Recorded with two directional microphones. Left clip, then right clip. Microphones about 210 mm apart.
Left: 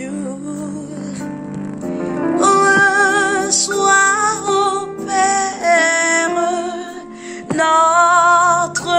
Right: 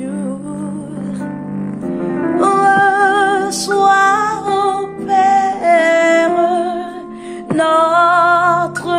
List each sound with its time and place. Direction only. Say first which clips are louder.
1.9 s music: right 1 dB; 40° left (ahead or behind)
2.4 s music: right 1 dB; 5° left (ahead or behind)